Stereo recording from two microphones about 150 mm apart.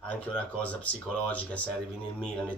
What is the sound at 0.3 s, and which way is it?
Speech, 10° left (ahead or behind).